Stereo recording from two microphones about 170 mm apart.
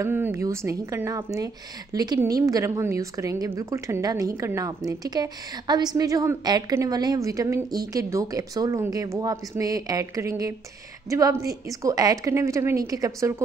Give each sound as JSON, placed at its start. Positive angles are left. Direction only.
{"t": 0.0, "sound": "a woman's voice", "side_deg": -15}